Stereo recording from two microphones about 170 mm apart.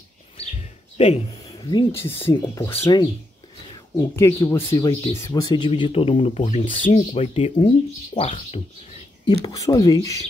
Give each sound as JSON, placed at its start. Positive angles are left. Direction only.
{"t": 0.9, "sound": "speech", "side_deg": 40}
{"t": 1.6, "sound": "speech", "side_deg": 25}
{"t": 1.9, "sound": "speech", "side_deg": 15}
{"t": 9.2, "sound": "speech", "side_deg": 25}